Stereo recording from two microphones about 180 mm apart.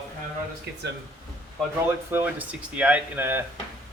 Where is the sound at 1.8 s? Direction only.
10° right (ahead or behind).